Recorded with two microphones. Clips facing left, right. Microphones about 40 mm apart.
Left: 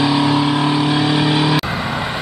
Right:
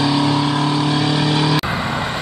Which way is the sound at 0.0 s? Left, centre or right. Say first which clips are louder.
Left 2 dB; centre.